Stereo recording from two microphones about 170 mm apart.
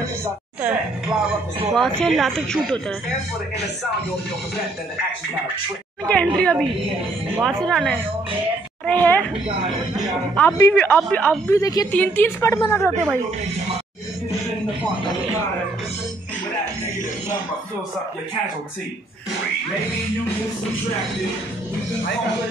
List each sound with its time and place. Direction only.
0.2 s speech: 10° right (ahead or behind)
1.7 s a woman's voice: centre (ahead or behind)
6.0 s a woman's voice: 5° left (ahead or behind)
10.3 s speech: 10° left (ahead or behind)
11.6 s a woman's voice: 20° left (ahead or behind)
11.9 s speech: 10° left (ahead or behind)